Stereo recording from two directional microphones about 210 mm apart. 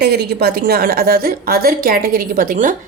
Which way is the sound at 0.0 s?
50° right (ahead or behind).